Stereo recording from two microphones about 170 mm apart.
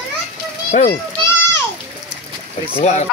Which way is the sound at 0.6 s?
45° left (ahead or behind).